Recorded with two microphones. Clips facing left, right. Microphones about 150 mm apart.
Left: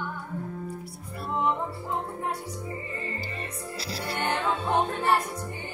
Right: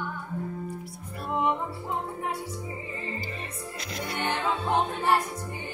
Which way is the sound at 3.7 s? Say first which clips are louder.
Left 1 dB; 35° left (ahead or behind).